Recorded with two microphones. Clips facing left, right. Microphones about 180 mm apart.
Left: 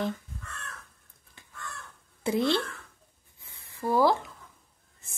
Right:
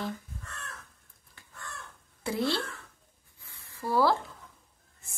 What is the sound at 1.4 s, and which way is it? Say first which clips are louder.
Crow: left 2 dB; 20° left (ahead or behind).